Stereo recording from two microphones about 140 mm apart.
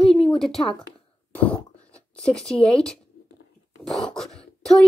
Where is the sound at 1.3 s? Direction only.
10° left (ahead or behind).